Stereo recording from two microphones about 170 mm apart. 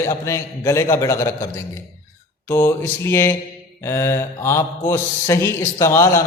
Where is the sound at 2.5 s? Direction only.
15° left (ahead or behind).